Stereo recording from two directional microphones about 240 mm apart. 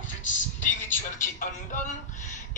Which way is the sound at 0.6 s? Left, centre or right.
Left.